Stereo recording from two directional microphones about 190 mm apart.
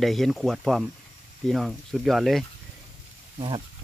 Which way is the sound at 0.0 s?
Centre (ahead or behind).